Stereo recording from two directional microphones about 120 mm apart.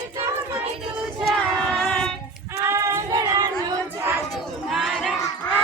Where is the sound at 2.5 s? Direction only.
25° right (ahead or behind).